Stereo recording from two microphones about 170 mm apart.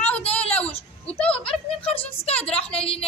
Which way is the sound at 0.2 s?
35° left (ahead or behind).